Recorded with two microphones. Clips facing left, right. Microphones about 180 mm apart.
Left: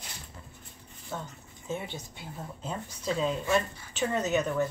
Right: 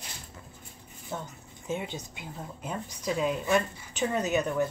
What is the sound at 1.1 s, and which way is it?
A woman's voice, 15° right (ahead or behind).